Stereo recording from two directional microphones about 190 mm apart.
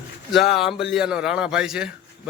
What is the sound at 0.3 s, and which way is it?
A man's voice, centre (ahead or behind).